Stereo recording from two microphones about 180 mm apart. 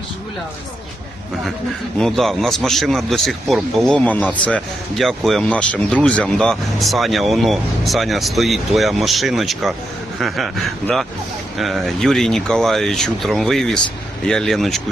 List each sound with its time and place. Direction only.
2.0 s speech: centre (ahead or behind)